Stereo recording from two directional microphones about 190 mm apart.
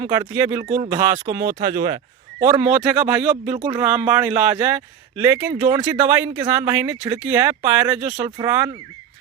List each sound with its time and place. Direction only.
0.0 s speech: 15° right (ahead or behind)
2.5 s speech: 5° right (ahead or behind)